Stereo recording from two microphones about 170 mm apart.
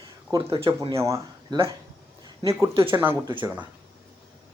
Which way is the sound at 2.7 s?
30° right (ahead or behind).